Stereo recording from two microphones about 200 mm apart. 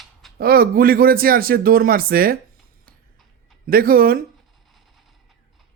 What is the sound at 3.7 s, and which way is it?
Speech, 45° right (ahead or behind).